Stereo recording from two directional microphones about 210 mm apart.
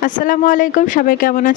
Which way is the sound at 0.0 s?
40° left (ahead or behind).